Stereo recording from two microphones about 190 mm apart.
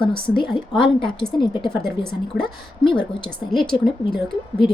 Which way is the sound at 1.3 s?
25° left (ahead or behind).